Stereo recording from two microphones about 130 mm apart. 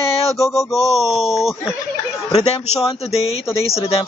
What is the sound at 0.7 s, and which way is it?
Speech, centre (ahead or behind).